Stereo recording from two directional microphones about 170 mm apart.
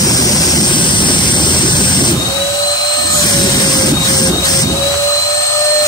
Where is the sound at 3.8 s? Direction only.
25° left (ahead or behind).